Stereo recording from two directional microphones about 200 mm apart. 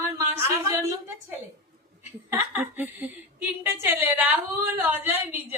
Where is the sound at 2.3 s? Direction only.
10° right (ahead or behind).